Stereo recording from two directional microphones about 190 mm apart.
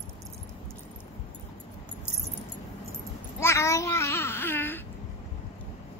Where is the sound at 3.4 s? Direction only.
15° left (ahead or behind).